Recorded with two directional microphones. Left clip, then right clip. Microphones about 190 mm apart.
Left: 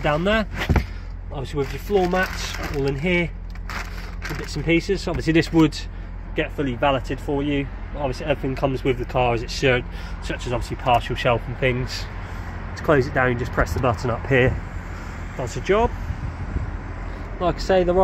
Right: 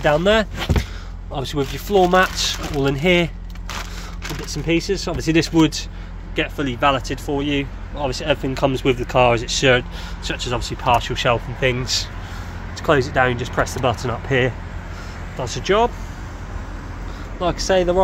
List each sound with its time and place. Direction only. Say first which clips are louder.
0.0 s speech: right 5 dB; 10° right (ahead or behind)
4.6 s speech: right 1 dB; centre (ahead or behind)
8.5 s speech: right 4 dB; 25° right (ahead or behind)
10.3 s speech: right 2 dB; 5° right (ahead or behind)
13.1 s speech: right 3 dB; 5° left (ahead or behind)
17.4 s speech: right 1 dB; centre (ahead or behind)